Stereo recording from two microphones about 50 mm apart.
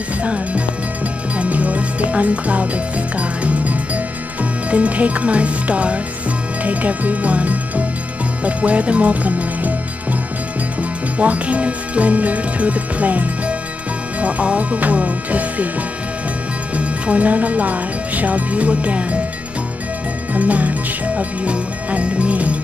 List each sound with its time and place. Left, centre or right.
0.2 s speech: right
1.4 s music: right
6.6 s speech: right
10.8 s speech: right
16.7 s speech: right
20.3 s speech: right